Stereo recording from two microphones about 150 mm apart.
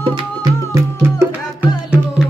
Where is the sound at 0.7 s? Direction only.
20° right (ahead or behind).